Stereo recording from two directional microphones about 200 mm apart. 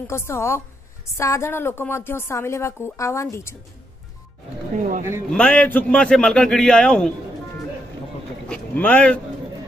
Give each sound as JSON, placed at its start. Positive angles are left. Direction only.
{"t": 0.0, "sound": "a woman's voice", "side_deg": 15}
{"t": 4.7, "sound": "speech", "side_deg": -40}
{"t": 5.3, "sound": "a man's voice", "side_deg": 5}
{"t": 8.5, "sound": "speech", "side_deg": 5}